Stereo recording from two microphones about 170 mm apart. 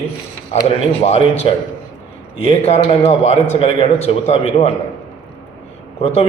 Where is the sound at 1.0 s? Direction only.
35° left (ahead or behind).